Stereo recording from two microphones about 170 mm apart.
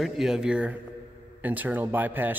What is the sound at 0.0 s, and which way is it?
A man's voice, 5° right (ahead or behind).